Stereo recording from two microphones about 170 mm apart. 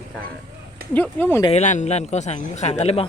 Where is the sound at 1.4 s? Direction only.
40° left (ahead or behind).